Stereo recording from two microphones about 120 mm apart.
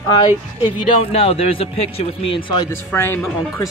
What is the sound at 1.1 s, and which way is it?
Speech, 55° left (ahead or behind).